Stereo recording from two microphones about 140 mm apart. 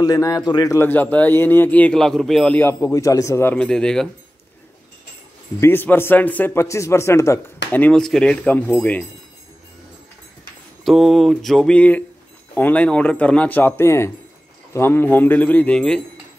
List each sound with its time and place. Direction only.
0.0 s speech: 25° left (ahead or behind)
0.7 s speech: 15° left (ahead or behind)
2.6 s speech: 20° left (ahead or behind)
3.6 s a sound: 5° left (ahead or behind)
5.6 s speech: 15° left (ahead or behind)
10.8 s a sound: centre (ahead or behind)
12.5 s speech: 10° left (ahead or behind)